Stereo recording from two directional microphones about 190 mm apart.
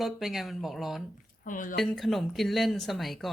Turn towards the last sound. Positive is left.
turn(degrees=0)  # may be behind; listen again after turning